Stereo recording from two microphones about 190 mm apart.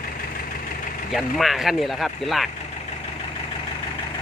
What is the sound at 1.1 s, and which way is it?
Speech, centre (ahead or behind).